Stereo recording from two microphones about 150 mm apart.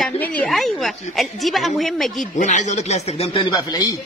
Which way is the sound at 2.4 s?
55° left (ahead or behind).